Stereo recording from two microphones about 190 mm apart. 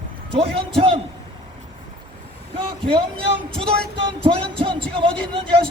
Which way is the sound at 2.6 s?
25° right (ahead or behind).